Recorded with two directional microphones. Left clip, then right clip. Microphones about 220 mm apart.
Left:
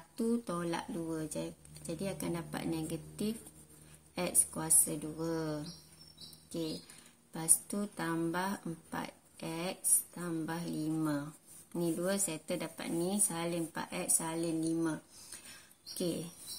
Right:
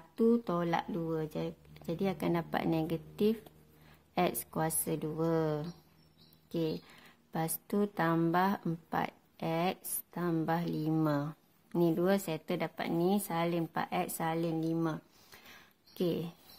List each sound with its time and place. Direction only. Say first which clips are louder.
0.2 s speech: right 6 dB; 45° right (ahead or behind)
7.3 s speech: right 4 dB; 45° right (ahead or behind)